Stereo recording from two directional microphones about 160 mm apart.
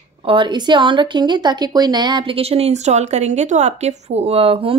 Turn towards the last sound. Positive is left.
turn(degrees=-35)  # may be behind; listen again after turning